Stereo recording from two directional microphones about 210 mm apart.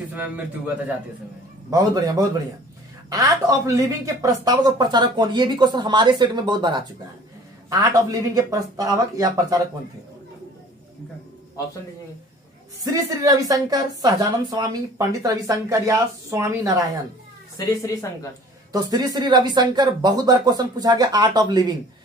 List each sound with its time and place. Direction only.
1.7 s a woman's voice: 15° right (ahead or behind)
12.8 s a woman's voice: 15° right (ahead or behind)
18.7 s speech: 20° right (ahead or behind)